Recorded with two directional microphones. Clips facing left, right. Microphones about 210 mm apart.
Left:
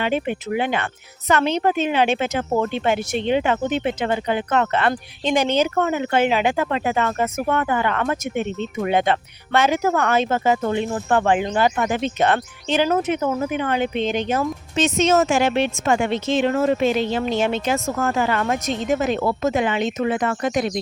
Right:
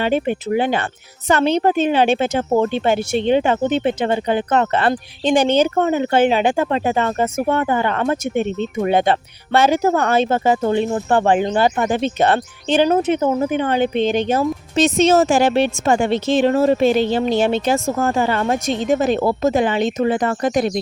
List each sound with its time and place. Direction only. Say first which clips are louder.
0.0 s a woman's voice: right 4 dB; 35° right (ahead or behind)